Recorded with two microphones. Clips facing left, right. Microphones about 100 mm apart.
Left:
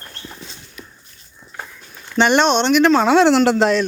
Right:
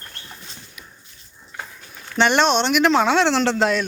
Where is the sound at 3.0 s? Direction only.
5° left (ahead or behind).